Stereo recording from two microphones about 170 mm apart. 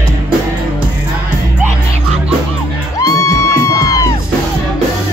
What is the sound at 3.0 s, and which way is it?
Music, 15° left (ahead or behind).